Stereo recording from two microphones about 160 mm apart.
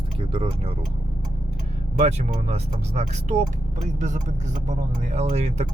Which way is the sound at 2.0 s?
45° right (ahead or behind).